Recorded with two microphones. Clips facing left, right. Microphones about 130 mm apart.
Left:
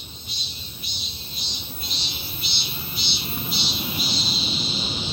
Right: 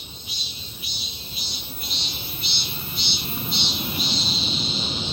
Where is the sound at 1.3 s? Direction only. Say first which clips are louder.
Even; 5° right (ahead or behind).